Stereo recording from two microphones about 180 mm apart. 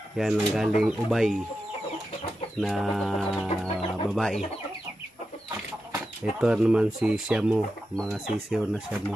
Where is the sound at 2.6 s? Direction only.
Centre (ahead or behind).